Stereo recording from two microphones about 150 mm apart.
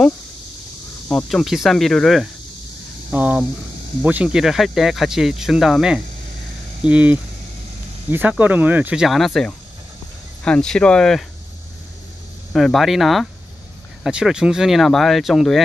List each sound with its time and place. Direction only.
1.0 s speech: centre (ahead or behind)
12.5 s speech: centre (ahead or behind)